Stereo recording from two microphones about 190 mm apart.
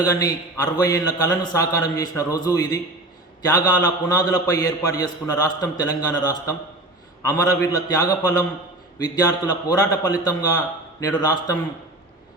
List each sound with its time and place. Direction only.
0.0 s a man's voice: 20° left (ahead or behind)